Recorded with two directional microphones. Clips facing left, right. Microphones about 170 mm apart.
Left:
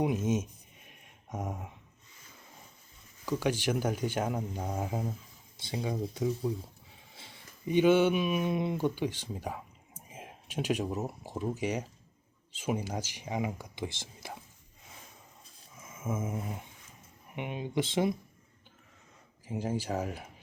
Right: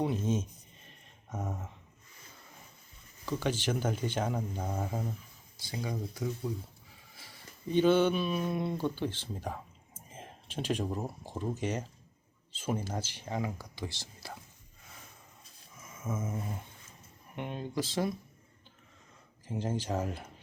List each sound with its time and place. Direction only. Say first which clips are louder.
0.0 s speech: left 2 dB; 10° left (ahead or behind)
0.9 s mantra: left 2 dB; 15° left (ahead or behind)
3.2 s speech: left 2 dB; 10° left (ahead or behind)
6.9 s a sound: left 2 dB; 25° left (ahead or behind)
7.7 s speech: left 1 dB; 10° left (ahead or behind)
15.9 s a sound: left 2 dB; 20° left (ahead or behind)
17.3 s speech: left 1 dB; 10° left (ahead or behind)
17.7 s speech: left 3 dB; 20° left (ahead or behind)
19.5 s speech: left 1 dB; 10° left (ahead or behind)